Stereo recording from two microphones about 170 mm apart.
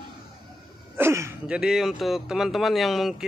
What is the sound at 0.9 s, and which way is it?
Speech, 15° right (ahead or behind).